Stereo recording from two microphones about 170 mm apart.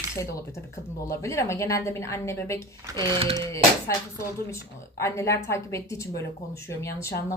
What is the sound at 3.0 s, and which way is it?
Speech, 35° right (ahead or behind).